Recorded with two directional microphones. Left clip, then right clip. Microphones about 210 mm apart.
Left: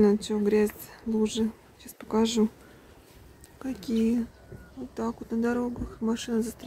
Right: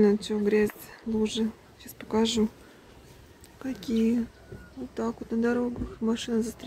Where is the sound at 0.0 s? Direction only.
10° left (ahead or behind).